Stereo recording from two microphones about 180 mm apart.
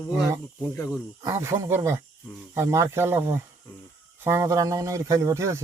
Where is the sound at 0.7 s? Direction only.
15° left (ahead or behind).